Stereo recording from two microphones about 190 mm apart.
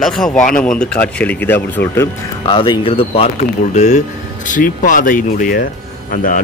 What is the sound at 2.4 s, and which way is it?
Speech, 25° left (ahead or behind).